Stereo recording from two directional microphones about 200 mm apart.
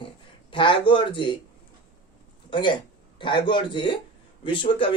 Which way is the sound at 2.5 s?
25° left (ahead or behind).